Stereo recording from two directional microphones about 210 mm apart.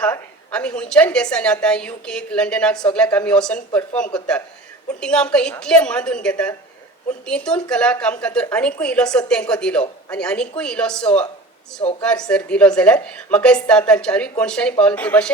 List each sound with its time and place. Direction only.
0.0 s a woman's voice: 5° left (ahead or behind)
4.9 s a woman's voice: 5° left (ahead or behind)
11.8 s speech: 25° left (ahead or behind)
12.0 s a woman's voice: 5° left (ahead or behind)